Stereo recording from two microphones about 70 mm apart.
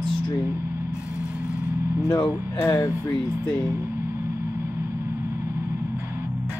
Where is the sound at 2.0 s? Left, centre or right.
Left.